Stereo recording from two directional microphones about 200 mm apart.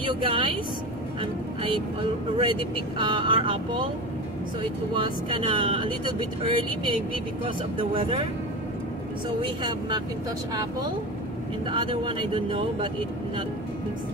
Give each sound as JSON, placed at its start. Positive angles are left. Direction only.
{"t": 0.0, "sound": "speech", "side_deg": -25}
{"t": 4.9, "sound": "speech", "side_deg": -25}
{"t": 9.4, "sound": "speech", "side_deg": -25}
{"t": 11.6, "sound": "speech", "side_deg": -25}